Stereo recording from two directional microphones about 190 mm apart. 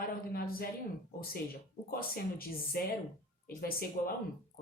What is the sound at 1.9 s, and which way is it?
Speech, 50° left (ahead or behind).